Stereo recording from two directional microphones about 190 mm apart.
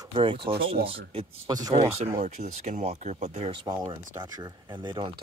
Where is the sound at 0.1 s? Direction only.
25° right (ahead or behind).